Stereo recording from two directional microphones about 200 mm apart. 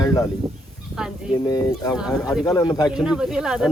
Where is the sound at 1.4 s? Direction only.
20° left (ahead or behind).